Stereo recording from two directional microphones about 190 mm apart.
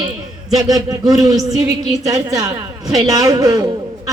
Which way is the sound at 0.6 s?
20° right (ahead or behind).